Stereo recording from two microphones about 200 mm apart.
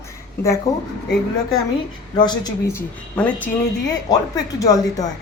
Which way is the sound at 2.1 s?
20° left (ahead or behind).